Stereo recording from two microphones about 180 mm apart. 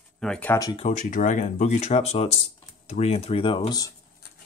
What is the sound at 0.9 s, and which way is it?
Speech, 45° left (ahead or behind).